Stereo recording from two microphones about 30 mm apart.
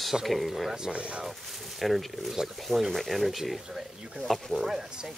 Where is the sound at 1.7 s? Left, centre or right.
Centre.